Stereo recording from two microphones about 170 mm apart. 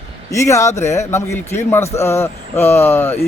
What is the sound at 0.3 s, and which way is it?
A man's voice, 15° left (ahead or behind).